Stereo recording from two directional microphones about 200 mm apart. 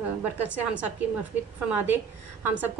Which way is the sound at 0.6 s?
5° right (ahead or behind).